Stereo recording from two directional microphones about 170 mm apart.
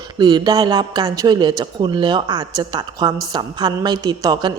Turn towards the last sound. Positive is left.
turn(degrees=-25)  # may be behind; listen again after turning